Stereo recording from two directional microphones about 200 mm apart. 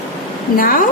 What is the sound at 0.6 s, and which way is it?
Speech, 45° left (ahead or behind).